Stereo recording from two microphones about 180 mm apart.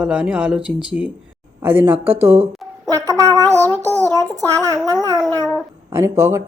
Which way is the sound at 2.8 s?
15° right (ahead or behind).